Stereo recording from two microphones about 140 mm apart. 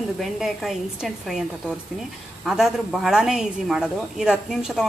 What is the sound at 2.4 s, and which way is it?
A woman's voice, 5° right (ahead or behind).